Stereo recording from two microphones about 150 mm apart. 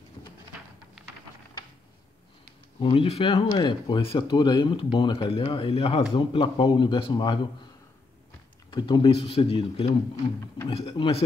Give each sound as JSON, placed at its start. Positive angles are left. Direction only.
{"t": 2.8, "sound": "speech", "side_deg": 35}
{"t": 8.6, "sound": "speech", "side_deg": 30}